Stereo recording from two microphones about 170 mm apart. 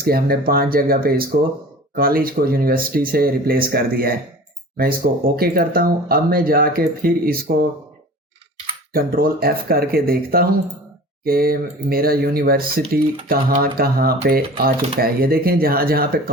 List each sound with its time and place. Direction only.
0.0 s speech: 60° right (ahead or behind)
8.9 s speech: 60° right (ahead or behind)